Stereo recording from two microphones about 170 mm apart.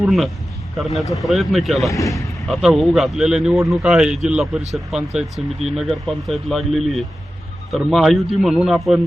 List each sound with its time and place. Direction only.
0.0 s speech: centre (ahead or behind)
1.9 s speech: 20° left (ahead or behind)
2.5 s speech: centre (ahead or behind)